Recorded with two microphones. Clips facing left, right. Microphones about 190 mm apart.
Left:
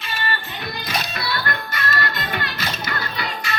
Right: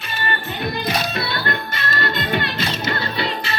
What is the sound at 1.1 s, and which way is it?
Music, 25° right (ahead or behind).